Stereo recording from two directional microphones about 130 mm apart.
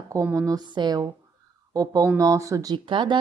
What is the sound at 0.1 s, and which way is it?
Speech, 20° right (ahead or behind).